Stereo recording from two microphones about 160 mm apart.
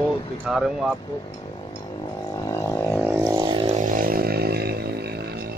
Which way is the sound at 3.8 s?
65° right (ahead or behind).